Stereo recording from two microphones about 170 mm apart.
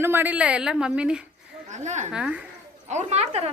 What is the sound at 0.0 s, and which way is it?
A woman's voice, 10° right (ahead or behind).